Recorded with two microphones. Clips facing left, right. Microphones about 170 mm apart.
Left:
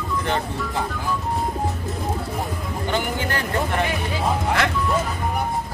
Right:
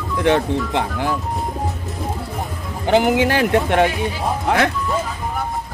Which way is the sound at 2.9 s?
90° right.